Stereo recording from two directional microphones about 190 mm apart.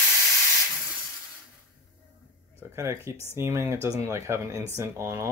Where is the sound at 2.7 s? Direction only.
15° right (ahead or behind).